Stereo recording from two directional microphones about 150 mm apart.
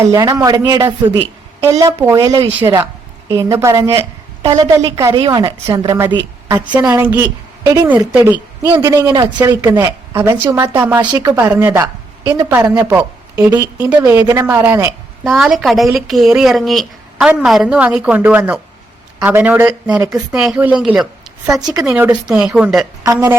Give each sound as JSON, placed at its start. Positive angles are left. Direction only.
{"t": 0.0, "sound": "speech", "side_deg": -25}
{"t": 3.6, "sound": "a woman's voice", "side_deg": -20}
{"t": 6.7, "sound": "a woman's voice", "side_deg": -10}
{"t": 8.7, "sound": "speech", "side_deg": -25}
{"t": 11.0, "sound": "speech", "side_deg": -30}
{"t": 11.3, "sound": "speech", "side_deg": -15}
{"t": 15.2, "sound": "speech", "side_deg": 0}